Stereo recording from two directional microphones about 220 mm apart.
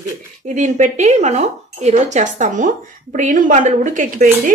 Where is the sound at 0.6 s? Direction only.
35° right (ahead or behind).